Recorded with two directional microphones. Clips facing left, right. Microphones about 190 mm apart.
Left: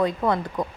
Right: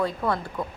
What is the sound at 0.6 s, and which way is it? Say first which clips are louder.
Speech: left 4 dB; 40° left (ahead or behind).